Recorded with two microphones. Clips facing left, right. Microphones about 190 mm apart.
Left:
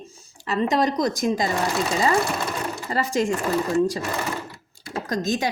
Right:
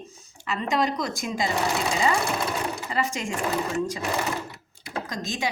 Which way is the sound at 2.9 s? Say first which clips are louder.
Left 8 dB; 40° left (ahead or behind).